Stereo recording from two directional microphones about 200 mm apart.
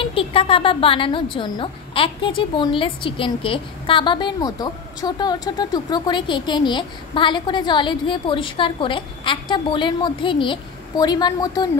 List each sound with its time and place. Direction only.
0.0 s speech: 25° left (ahead or behind)